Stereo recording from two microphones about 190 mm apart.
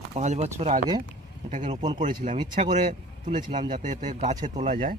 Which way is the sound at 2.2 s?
40° right (ahead or behind).